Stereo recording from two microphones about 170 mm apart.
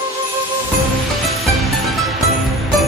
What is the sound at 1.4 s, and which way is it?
Music, centre (ahead or behind).